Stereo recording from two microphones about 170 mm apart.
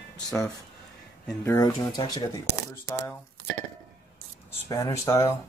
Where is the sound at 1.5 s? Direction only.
25° left (ahead or behind).